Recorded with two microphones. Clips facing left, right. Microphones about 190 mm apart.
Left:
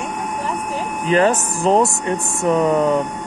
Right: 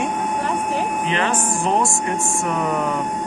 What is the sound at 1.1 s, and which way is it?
Speech, 40° left (ahead or behind).